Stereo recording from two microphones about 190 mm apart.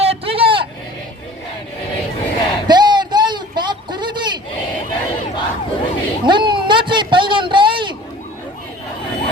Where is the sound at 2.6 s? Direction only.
25° right (ahead or behind).